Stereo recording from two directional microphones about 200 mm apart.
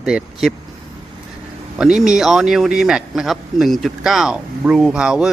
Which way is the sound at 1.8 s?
Centre (ahead or behind).